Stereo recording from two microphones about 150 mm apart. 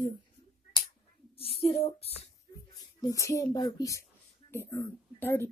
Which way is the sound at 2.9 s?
20° left (ahead or behind).